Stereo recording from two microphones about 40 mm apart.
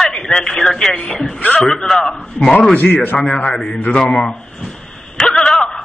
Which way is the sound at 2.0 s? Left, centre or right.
Centre.